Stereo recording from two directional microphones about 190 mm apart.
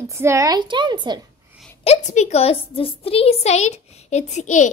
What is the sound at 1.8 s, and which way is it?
A woman's voice, 35° left (ahead or behind).